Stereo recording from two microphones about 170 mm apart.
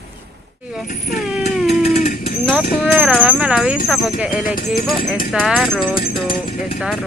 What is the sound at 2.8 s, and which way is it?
Speech, 5° right (ahead or behind).